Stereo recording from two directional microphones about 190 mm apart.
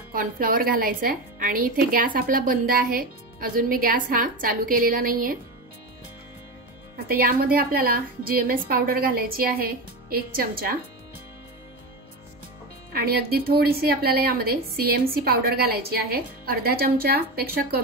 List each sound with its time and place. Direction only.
0.1 s a woman's voice: 45° right (ahead or behind)
7.1 s a woman's voice: 50° right (ahead or behind)
12.9 s a woman's voice: 55° right (ahead or behind)